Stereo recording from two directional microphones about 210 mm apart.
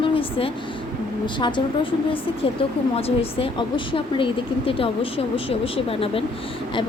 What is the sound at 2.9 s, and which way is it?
Speech, 30° left (ahead or behind).